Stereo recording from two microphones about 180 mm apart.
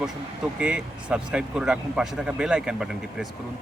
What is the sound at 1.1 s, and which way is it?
A man's voice, 5° right (ahead or behind).